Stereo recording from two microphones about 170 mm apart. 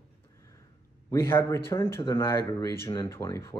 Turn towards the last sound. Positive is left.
turn(degrees=15)  # may be behind; listen again after turning